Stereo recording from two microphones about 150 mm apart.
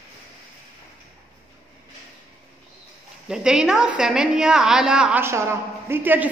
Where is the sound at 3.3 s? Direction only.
5° right (ahead or behind).